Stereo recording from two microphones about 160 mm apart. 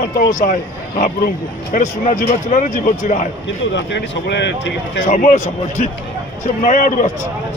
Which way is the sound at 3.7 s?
90° left.